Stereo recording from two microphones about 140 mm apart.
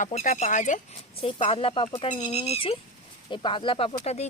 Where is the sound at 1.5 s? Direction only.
40° left (ahead or behind).